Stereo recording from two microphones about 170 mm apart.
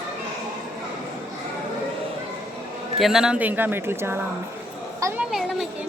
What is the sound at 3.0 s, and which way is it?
A woman's voice, 5° right (ahead or behind).